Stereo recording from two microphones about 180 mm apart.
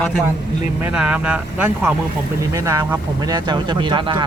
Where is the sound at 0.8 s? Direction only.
5° right (ahead or behind); by 4.2 s 25° right (ahead or behind).